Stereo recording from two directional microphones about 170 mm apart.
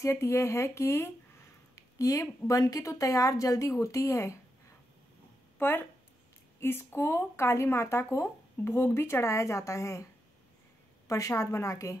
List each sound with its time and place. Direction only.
0.0 s a woman's voice: 15° left (ahead or behind)
5.6 s speech: 15° left (ahead or behind)
11.1 s speech: 20° left (ahead or behind)